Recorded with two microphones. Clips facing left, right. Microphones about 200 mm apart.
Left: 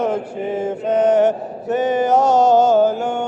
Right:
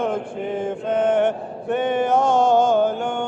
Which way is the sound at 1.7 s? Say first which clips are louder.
Left 3 dB; 60° right (ahead or behind).